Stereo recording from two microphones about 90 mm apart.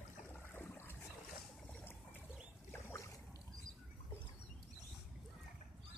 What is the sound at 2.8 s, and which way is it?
Boat, 35° left (ahead or behind).